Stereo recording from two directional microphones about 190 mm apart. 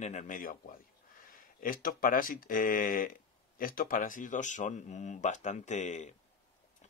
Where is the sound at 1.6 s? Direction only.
50° left (ahead or behind).